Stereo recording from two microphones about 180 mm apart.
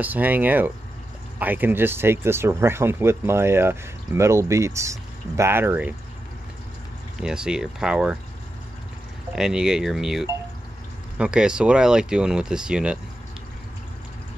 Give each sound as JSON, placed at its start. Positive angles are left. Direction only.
{"t": 0.0, "sound": "speech", "side_deg": -10}
{"t": 7.2, "sound": "speech", "side_deg": -5}
{"t": 9.3, "sound": "speech", "side_deg": -5}